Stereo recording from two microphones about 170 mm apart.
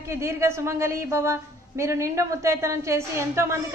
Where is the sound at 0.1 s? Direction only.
15° right (ahead or behind).